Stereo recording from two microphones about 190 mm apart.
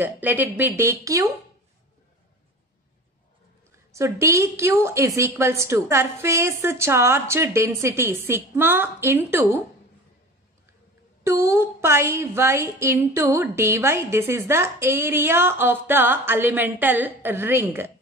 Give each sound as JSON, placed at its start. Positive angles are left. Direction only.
{"t": 0.0, "sound": "a woman's voice", "side_deg": -10}
{"t": 3.9, "sound": "a woman's voice", "side_deg": -15}
{"t": 11.2, "sound": "a woman's voice", "side_deg": -15}